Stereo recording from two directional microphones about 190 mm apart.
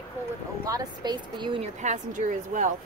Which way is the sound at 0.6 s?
20° right (ahead or behind).